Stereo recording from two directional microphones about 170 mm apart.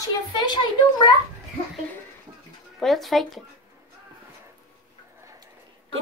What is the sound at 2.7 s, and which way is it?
Speech, centre (ahead or behind).